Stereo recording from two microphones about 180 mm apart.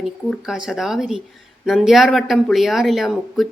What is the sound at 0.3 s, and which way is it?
Speech, 5° right (ahead or behind).